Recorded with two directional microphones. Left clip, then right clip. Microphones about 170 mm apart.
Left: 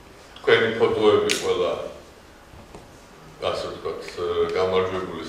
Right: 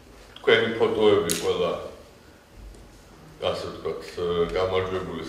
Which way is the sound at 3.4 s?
40° left (ahead or behind).